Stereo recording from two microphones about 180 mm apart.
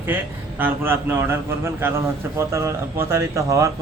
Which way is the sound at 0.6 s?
10° right (ahead or behind).